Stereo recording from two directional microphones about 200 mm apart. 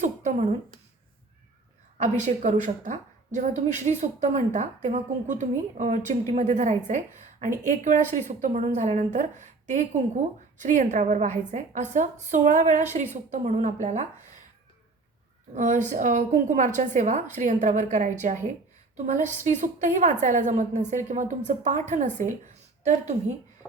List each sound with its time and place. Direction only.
0.0 s a sound: 35° right (ahead or behind)
2.0 s a woman's voice: 35° right (ahead or behind)
15.5 s a woman's voice: 40° right (ahead or behind)